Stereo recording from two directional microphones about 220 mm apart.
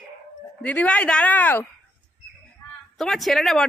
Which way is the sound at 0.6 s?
5° left (ahead or behind).